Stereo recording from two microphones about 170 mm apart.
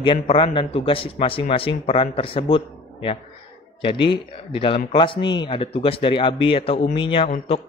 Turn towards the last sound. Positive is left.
turn(degrees=30)  # may be behind; listen again after turning